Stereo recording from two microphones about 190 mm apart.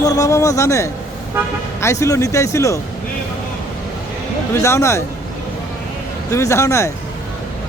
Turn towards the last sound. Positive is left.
turn(degrees=15)  # may be behind; listen again after turning